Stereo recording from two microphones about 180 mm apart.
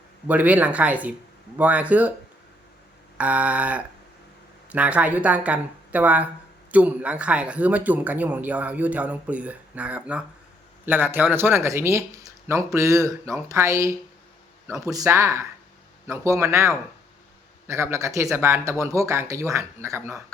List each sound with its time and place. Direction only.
0.3 s speech: 10° right (ahead or behind)
3.2 s speech: 10° right (ahead or behind)